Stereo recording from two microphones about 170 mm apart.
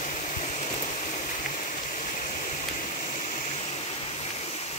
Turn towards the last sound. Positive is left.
turn(degrees=45)  # may be behind; listen again after turning